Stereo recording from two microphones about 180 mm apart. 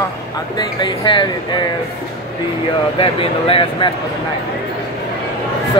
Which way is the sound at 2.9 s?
30° left (ahead or behind).